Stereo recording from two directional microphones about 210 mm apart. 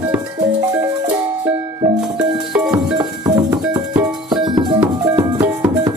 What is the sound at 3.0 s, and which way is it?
Music, 15° right (ahead or behind).